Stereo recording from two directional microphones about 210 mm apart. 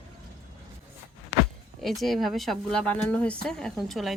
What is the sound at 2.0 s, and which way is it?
Speech, centre (ahead or behind).